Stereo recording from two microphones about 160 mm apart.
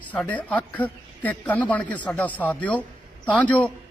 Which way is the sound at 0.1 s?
10° left (ahead or behind).